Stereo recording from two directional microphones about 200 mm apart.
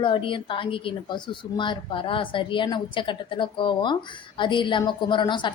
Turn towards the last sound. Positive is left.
turn(degrees=25)  # may be behind; listen again after turning